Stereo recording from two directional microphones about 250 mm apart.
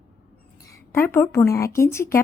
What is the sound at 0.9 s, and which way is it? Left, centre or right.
Speech, centre.